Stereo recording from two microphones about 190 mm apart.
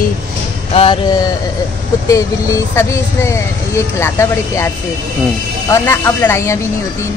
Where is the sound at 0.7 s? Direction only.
30° left (ahead or behind).